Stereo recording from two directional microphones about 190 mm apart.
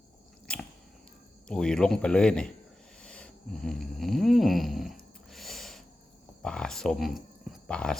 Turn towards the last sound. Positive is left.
turn(degrees=5)  # may be behind; listen again after turning